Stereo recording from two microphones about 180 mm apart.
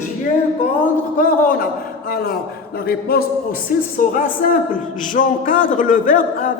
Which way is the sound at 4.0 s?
45° left (ahead or behind).